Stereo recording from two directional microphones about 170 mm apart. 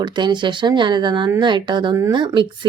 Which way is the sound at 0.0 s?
25° right (ahead or behind).